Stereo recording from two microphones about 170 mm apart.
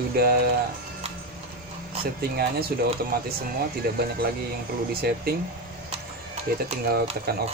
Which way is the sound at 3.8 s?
60° right (ahead or behind).